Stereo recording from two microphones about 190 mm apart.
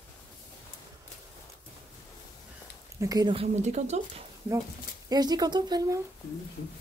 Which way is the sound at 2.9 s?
20° right (ahead or behind).